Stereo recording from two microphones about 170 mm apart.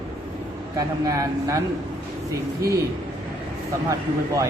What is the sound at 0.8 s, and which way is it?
Speech, 20° right (ahead or behind).